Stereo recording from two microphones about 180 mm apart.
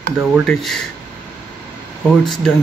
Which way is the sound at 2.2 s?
Centre (ahead or behind).